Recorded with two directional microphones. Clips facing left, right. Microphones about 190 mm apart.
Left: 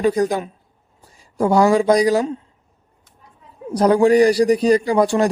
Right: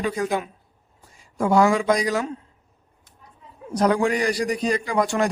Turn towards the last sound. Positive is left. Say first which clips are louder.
# left 6 dB
turn(degrees=35)  # may be behind; listen again after turning